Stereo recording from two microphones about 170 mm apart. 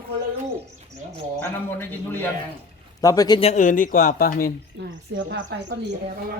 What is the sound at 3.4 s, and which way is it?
Speech, 45° left (ahead or behind).